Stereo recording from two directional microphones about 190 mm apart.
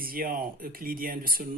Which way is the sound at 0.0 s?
50° right (ahead or behind).